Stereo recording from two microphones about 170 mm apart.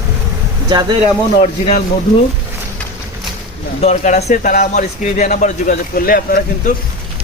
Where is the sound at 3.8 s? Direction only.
40° left (ahead or behind).